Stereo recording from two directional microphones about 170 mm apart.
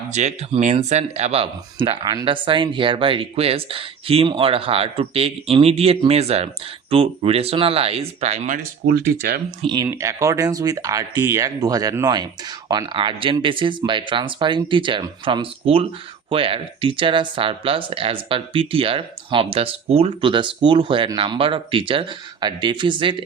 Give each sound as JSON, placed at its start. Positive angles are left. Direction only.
{"t": 0.1, "sound": "speech", "side_deg": -40}
{"t": 9.6, "sound": "speech", "side_deg": -30}
{"t": 9.8, "sound": "speech", "side_deg": -20}